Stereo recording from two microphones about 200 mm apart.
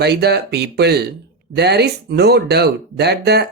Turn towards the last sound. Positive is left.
turn(degrees=-55)  # may be behind; listen again after turning